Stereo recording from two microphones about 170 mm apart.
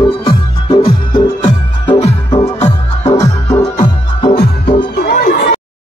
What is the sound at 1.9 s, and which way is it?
Music, 35° left (ahead or behind).